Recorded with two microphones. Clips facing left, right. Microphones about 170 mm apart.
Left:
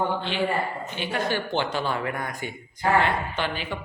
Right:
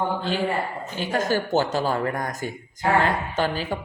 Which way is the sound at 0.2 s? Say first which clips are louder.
Right 1 dB; 40° right (ahead or behind).